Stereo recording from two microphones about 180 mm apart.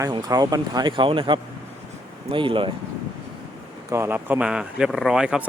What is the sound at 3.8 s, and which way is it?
Speech, 15° right (ahead or behind).